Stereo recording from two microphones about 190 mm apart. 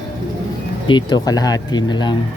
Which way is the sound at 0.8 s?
25° left (ahead or behind).